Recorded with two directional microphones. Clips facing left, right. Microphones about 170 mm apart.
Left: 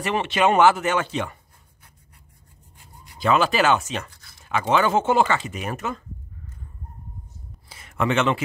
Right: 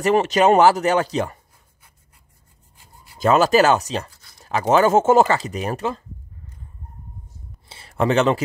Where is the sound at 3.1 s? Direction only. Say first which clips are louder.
Right 5 dB; 40° right (ahead or behind).